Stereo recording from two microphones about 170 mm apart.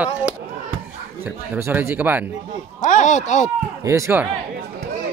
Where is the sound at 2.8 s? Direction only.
45° left (ahead or behind).